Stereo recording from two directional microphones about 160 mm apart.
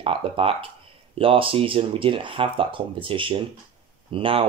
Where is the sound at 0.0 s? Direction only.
35° right (ahead or behind).